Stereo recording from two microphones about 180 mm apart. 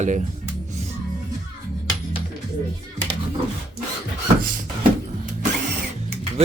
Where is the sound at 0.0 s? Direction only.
40° right (ahead or behind).